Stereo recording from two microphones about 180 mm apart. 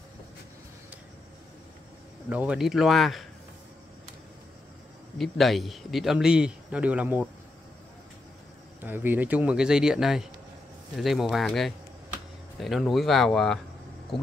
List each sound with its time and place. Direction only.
2.2 s a man's voice: 10° right (ahead or behind)
5.1 s a man's voice: centre (ahead or behind)
8.8 s a man's voice: 10° right (ahead or behind)